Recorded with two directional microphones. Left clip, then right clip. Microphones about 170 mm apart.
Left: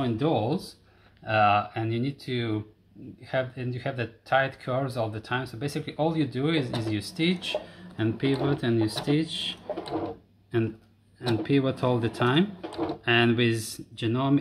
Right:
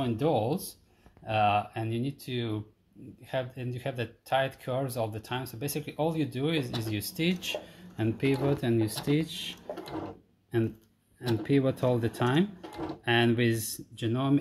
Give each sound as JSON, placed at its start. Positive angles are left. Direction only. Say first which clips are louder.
{"t": 0.0, "sound": "speech", "louder": "left 2 dB", "side_deg": -25}